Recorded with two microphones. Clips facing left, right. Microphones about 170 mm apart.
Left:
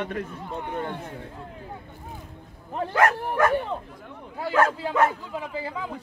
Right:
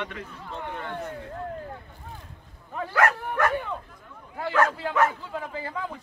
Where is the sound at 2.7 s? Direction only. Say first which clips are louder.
Left 2 dB; 25° left (ahead or behind).